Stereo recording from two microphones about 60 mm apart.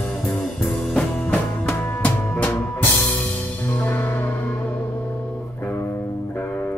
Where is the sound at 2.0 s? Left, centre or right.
Left.